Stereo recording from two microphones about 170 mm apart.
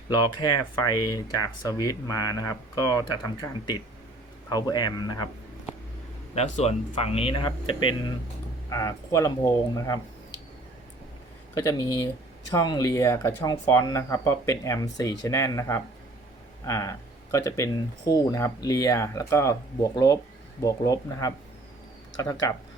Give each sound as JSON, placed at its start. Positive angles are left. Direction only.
{"t": 0.1, "sound": "speech", "side_deg": 25}
{"t": 6.3, "sound": "speech", "side_deg": 40}
{"t": 12.5, "sound": "speech", "side_deg": 25}